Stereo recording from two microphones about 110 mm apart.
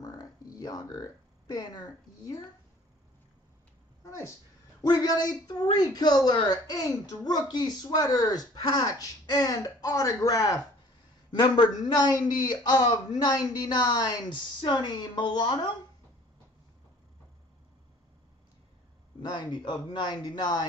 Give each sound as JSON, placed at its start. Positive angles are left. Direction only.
{"t": 0.0, "sound": "a sound", "side_deg": 35}
{"t": 4.0, "sound": "speech", "side_deg": 30}
{"t": 19.2, "sound": "speech", "side_deg": 35}